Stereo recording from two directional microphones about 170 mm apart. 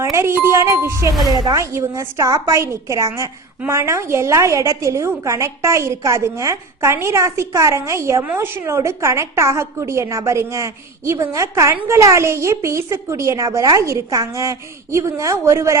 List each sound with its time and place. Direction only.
0.0 s speech: 15° right (ahead or behind)